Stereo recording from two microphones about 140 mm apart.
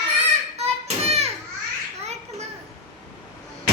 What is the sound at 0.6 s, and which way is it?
Child singing, 50° right (ahead or behind).